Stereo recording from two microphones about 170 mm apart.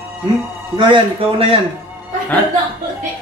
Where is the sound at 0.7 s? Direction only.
30° right (ahead or behind).